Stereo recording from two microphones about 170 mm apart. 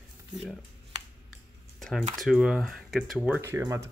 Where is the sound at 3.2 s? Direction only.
10° right (ahead or behind).